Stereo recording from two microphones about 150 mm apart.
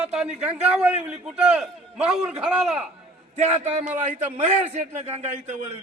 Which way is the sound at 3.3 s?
50° right (ahead or behind).